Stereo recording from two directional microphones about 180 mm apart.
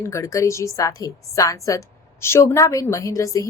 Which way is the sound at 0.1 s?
15° left (ahead or behind).